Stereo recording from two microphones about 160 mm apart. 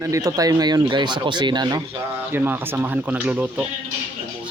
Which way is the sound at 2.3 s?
10° right (ahead or behind).